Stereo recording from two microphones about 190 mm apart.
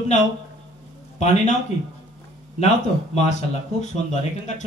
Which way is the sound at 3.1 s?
35° left (ahead or behind).